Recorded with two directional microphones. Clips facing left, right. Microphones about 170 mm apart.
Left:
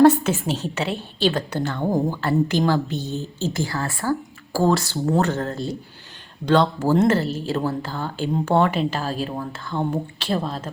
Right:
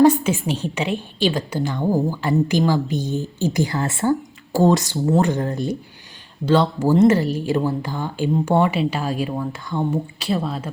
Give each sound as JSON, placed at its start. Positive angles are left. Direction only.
{"t": 0.2, "sound": "speech", "side_deg": -10}